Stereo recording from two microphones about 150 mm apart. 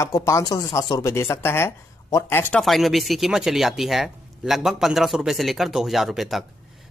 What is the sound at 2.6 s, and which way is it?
Speech, centre (ahead or behind).